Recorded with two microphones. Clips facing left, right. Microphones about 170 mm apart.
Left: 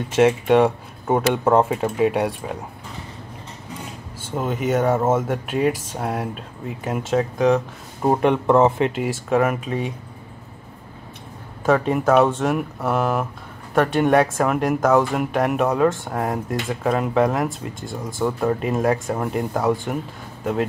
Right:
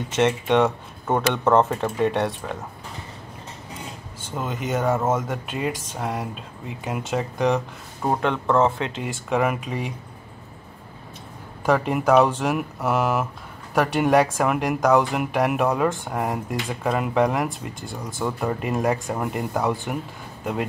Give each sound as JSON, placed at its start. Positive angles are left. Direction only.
{"t": 0.1, "sound": "speech", "side_deg": 5}
{"t": 4.4, "sound": "speech", "side_deg": 5}
{"t": 8.0, "sound": "speech", "side_deg": 15}
{"t": 9.0, "sound": "speech", "side_deg": 0}
{"t": 11.6, "sound": "speech", "side_deg": 0}